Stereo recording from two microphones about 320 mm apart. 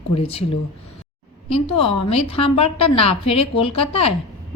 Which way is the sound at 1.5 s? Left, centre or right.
Centre.